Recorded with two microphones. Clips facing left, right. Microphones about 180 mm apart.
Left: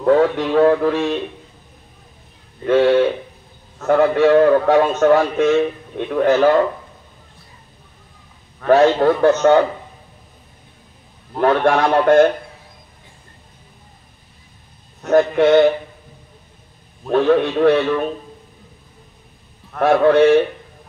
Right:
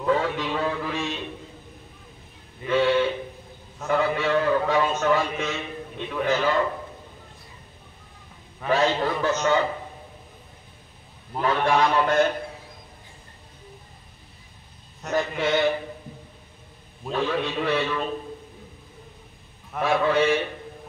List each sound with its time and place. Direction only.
0.0 s a man's voice: 55° left (ahead or behind)
2.6 s a man's voice: 55° left (ahead or behind)
8.6 s a man's voice: 60° left (ahead or behind)
11.4 s a man's voice: 60° left (ahead or behind)
15.0 s a man's voice: 60° left (ahead or behind)
17.1 s a man's voice: 55° left (ahead or behind)
19.8 s a man's voice: 60° left (ahead or behind)